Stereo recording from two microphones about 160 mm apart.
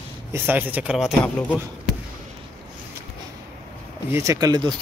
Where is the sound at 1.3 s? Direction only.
10° left (ahead or behind).